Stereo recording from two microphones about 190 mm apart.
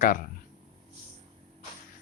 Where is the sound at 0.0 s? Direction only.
45° left (ahead or behind).